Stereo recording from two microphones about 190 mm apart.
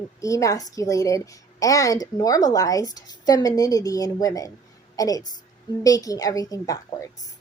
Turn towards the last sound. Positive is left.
turn(degrees=20)  # may be behind; listen again after turning